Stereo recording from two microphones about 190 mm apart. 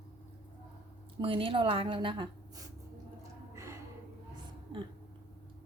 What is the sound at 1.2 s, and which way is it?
A woman's voice, 30° right (ahead or behind).